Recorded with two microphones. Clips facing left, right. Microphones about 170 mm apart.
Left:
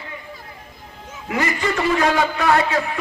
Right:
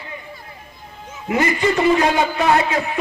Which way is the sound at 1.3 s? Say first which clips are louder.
Right 4 dB; 20° right (ahead or behind).